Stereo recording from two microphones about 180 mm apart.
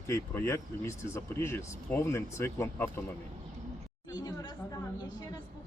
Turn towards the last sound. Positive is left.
turn(degrees=20)  # may be behind; listen again after turning